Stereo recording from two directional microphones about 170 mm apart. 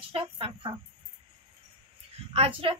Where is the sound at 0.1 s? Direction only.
30° right (ahead or behind).